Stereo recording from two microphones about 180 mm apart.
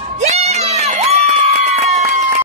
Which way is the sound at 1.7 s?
40° right (ahead or behind).